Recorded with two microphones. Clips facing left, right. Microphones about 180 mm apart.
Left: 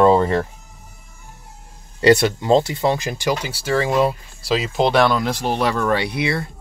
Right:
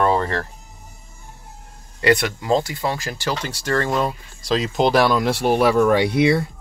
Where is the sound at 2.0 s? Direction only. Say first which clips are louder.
Left 4 dB; 30° left (ahead or behind); by 6.0 s 10° right (ahead or behind).